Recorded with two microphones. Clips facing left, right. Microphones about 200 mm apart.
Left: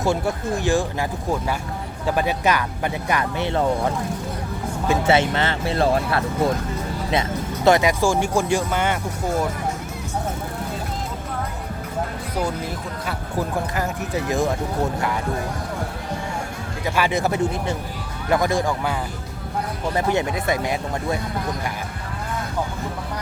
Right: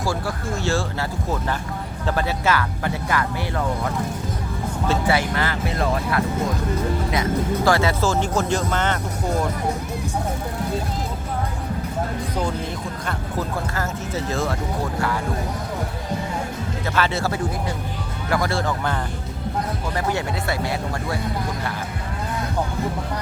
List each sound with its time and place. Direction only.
0.0 s speech: 20° left (ahead or behind)
13.7 s speech: 15° left (ahead or behind)
16.8 s speech: 15° left (ahead or behind)
20.0 s speech: 20° left (ahead or behind)